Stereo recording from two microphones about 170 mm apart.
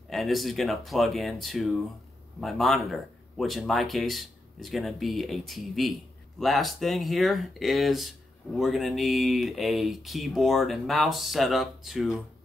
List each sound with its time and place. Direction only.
0.1 s speech: centre (ahead or behind)